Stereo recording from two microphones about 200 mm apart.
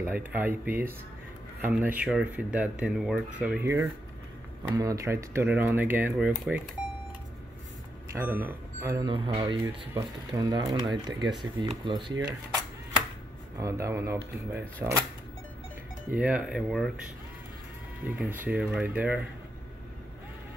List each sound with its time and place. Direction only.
0.0 s speech: 10° right (ahead or behind)
8.1 s speech: 10° right (ahead or behind)
9.1 s speech: 25° right (ahead or behind)
13.6 s speech: 15° right (ahead or behind)
16.1 s speech: 5° right (ahead or behind)
18.2 s speech: 10° right (ahead or behind)